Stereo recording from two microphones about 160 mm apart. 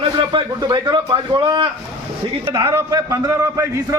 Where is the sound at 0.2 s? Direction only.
30° right (ahead or behind).